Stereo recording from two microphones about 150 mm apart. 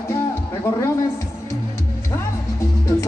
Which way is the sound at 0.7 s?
15° left (ahead or behind).